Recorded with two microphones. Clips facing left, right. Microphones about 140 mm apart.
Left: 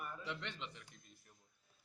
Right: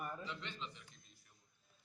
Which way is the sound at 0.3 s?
65° left (ahead or behind).